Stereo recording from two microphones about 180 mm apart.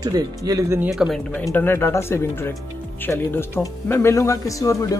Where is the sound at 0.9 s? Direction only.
Centre (ahead or behind).